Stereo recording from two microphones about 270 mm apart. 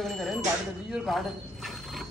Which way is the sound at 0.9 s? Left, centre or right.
Centre.